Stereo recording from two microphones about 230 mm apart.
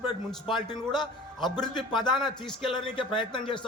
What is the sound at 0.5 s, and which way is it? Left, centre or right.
Speech, centre.